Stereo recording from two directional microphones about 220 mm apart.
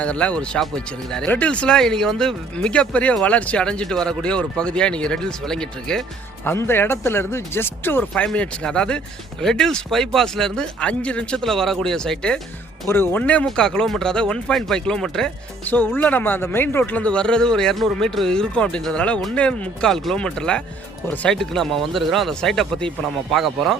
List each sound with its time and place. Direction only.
0.0 s speech: 5° left (ahead or behind)